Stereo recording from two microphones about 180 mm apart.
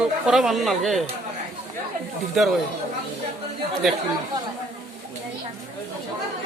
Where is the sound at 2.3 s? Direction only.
Centre (ahead or behind).